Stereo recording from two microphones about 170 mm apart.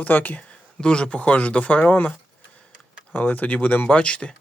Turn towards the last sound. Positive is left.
turn(degrees=5)  # may be behind; listen again after turning